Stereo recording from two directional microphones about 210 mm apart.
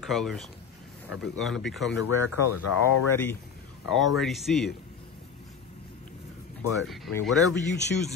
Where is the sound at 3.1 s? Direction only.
10° left (ahead or behind).